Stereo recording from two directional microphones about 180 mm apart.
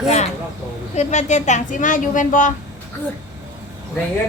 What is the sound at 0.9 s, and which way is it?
A woman's voice, 40° left (ahead or behind).